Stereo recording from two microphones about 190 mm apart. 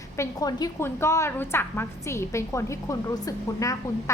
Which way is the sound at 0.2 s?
20° left (ahead or behind).